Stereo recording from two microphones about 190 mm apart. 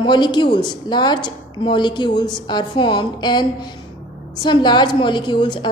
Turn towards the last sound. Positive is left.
turn(degrees=25)  # may be behind; listen again after turning